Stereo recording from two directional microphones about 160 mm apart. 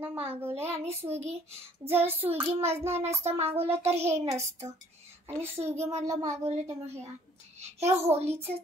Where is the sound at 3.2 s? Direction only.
40° right (ahead or behind).